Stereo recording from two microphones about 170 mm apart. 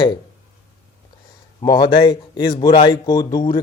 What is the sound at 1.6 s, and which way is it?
Speech, 25° left (ahead or behind).